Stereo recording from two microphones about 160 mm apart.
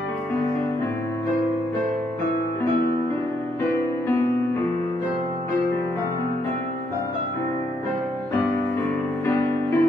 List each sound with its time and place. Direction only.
9.2 s music: 15° left (ahead or behind)